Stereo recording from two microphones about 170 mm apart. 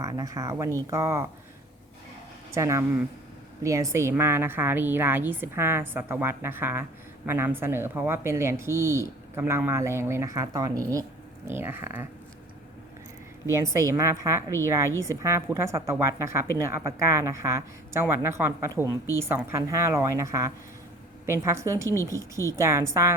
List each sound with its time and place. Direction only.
0.0 s a woman's voice: 20° right (ahead or behind)
2.5 s a woman's voice: 15° right (ahead or behind)
13.5 s a woman's voice: 15° right (ahead or behind)